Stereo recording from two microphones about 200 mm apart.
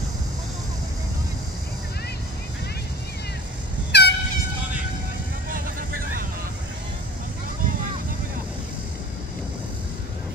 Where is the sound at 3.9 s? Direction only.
55° left (ahead or behind).